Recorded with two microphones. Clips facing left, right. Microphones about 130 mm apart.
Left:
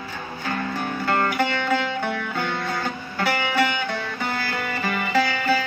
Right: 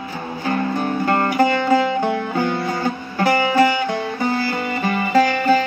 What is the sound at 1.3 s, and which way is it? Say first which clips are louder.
Music: right 7 dB; 35° right (ahead or behind).